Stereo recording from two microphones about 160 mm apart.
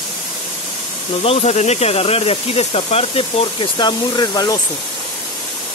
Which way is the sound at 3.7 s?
25° left (ahead or behind).